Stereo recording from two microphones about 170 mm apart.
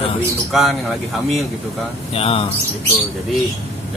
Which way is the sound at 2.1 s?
35° left (ahead or behind).